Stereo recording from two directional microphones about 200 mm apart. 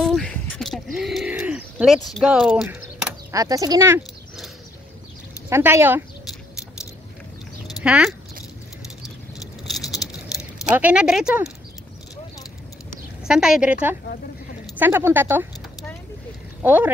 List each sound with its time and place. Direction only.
0.0 s a sound: 5° left (ahead or behind)
1.3 s bird: 5° right (ahead or behind)
2.0 s speech: centre (ahead or behind)
3.3 s speech: 15° right (ahead or behind)
5.5 s speech: 10° right (ahead or behind)
7.8 s speech: 5° right (ahead or behind)
9.7 s a sound: centre (ahead or behind)
10.8 s speech: 5° right (ahead or behind)
12.9 s speech: 5° right (ahead or behind)
16.6 s speech: 10° right (ahead or behind)